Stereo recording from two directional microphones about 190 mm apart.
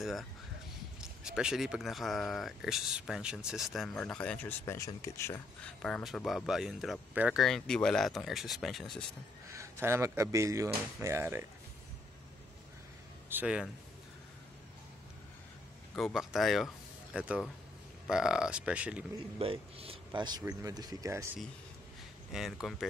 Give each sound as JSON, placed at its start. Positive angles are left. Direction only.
{"t": 0.0, "sound": "speech", "side_deg": 0}
{"t": 5.8, "sound": "speech", "side_deg": 5}
{"t": 9.5, "sound": "speech", "side_deg": -15}
{"t": 13.3, "sound": "speech", "side_deg": -5}
{"t": 16.0, "sound": "speech", "side_deg": 0}
{"t": 19.3, "sound": "a man's voice", "side_deg": -30}
{"t": 22.3, "sound": "speech", "side_deg": 0}